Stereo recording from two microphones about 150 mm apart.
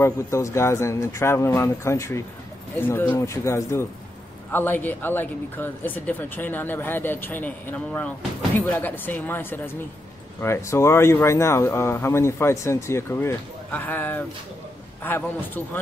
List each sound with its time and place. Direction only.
0.0 s speech: 20° left (ahead or behind)